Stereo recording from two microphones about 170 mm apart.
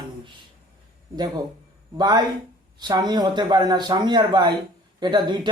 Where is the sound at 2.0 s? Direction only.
25° right (ahead or behind).